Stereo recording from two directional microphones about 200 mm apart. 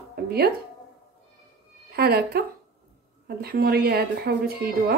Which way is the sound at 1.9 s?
50° right (ahead or behind).